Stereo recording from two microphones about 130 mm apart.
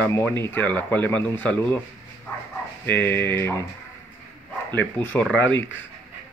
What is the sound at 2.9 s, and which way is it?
Speech, 15° left (ahead or behind).